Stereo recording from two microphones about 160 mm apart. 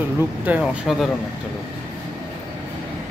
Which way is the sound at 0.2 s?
10° right (ahead or behind).